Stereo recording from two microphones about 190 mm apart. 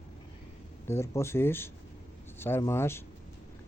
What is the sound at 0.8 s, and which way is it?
Speech, 15° left (ahead or behind).